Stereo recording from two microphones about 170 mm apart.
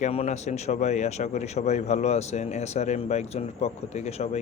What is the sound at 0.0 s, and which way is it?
Speech, 40° left (ahead or behind).